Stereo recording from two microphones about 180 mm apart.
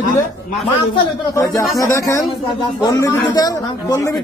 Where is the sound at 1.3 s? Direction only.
20° left (ahead or behind).